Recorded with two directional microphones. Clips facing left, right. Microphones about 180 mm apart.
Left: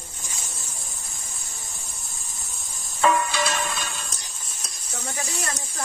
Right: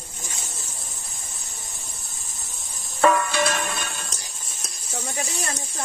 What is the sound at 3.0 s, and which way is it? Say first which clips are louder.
Music: right 2 dB; 55° right (ahead or behind).